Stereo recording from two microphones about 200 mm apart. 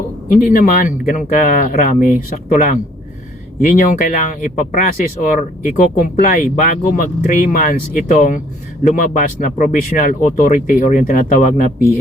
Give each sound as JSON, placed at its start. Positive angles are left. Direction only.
{"t": 0.4, "sound": "speech", "side_deg": 45}